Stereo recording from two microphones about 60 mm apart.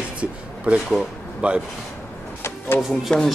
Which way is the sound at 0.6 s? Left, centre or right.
Centre.